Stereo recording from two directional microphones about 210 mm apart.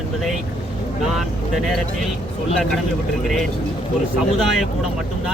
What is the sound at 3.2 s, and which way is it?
Speech, centre (ahead or behind).